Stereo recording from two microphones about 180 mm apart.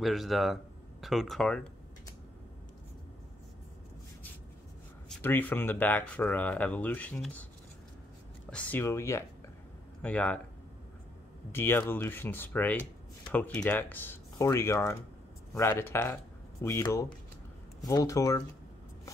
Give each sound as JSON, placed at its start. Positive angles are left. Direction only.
{"t": 0.0, "sound": "speech", "side_deg": 0}
{"t": 5.2, "sound": "speech", "side_deg": 10}
{"t": 8.5, "sound": "speech", "side_deg": 10}
{"t": 11.5, "sound": "speech", "side_deg": 10}